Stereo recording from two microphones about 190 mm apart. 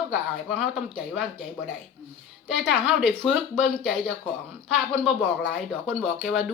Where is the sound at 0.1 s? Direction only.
Centre (ahead or behind).